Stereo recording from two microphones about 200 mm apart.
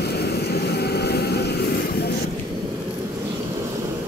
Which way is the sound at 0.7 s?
55° left (ahead or behind).